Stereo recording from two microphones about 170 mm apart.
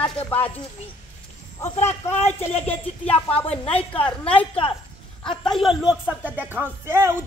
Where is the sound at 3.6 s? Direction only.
35° left (ahead or behind).